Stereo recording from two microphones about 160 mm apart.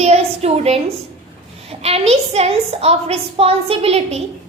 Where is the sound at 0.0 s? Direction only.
40° right (ahead or behind).